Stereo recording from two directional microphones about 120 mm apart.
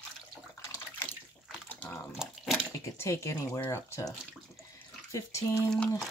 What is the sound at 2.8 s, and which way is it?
Speech, 25° left (ahead or behind).